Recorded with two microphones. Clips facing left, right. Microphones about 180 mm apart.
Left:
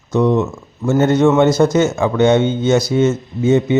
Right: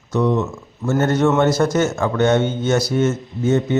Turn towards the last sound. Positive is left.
turn(degrees=15)  # may be behind; listen again after turning